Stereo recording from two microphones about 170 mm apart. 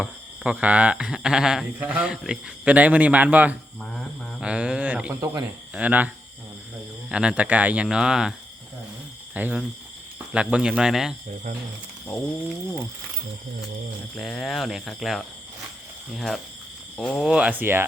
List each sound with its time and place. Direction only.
0.0 s speech: 5° right (ahead or behind)
3.8 s speech: 5° left (ahead or behind)
4.4 s speech: 5° right (ahead or behind)
5.2 s speech: 20° right (ahead or behind)
5.7 s speech: 10° right (ahead or behind)
7.1 s speech: 5° right (ahead or behind)
14.2 s speech: centre (ahead or behind)